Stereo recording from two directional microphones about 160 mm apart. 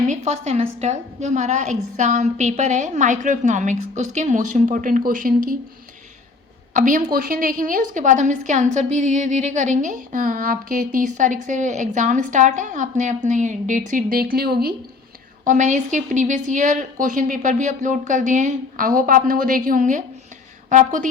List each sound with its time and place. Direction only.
0.1 s a woman's voice: 45° right (ahead or behind); by 5.5 s 60° right (ahead or behind)
6.7 s a woman's voice: 55° right (ahead or behind); by 14.8 s 75° right (ahead or behind)
15.4 s a woman's voice: 50° right (ahead or behind)